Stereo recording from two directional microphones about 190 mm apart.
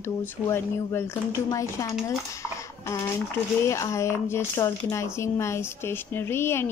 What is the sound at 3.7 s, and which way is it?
A woman's voice, 15° left (ahead or behind).